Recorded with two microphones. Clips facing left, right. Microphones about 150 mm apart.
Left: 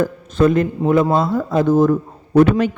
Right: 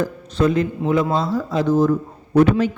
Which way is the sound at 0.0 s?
50° left (ahead or behind).